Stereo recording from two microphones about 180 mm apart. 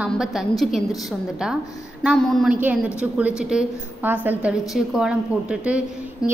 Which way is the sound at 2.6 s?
10° right (ahead or behind).